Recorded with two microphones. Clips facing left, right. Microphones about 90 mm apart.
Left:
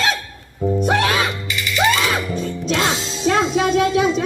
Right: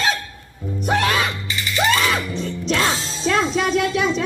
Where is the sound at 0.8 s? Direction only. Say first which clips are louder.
Right 1 dB; 60° left (ahead or behind).